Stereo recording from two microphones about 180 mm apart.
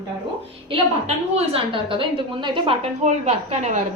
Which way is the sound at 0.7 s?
35° right (ahead or behind).